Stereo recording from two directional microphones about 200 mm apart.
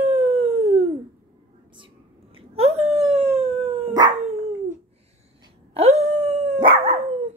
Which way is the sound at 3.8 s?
20° right (ahead or behind).